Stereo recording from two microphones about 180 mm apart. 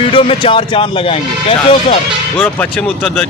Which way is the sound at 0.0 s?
30° left (ahead or behind).